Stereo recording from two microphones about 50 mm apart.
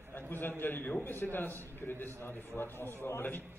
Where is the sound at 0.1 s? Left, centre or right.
Left.